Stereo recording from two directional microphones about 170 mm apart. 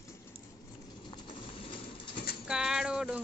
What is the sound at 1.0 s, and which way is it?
Bird, 25° left (ahead or behind).